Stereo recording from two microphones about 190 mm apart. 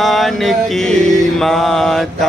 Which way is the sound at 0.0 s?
Centre (ahead or behind).